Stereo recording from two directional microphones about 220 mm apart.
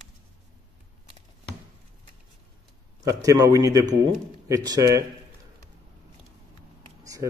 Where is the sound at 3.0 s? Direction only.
15° right (ahead or behind).